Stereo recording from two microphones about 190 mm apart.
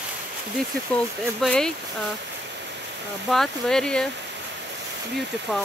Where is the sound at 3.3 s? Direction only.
Centre (ahead or behind).